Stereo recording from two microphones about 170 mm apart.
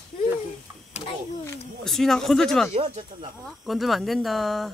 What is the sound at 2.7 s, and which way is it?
Speech, 35° right (ahead or behind).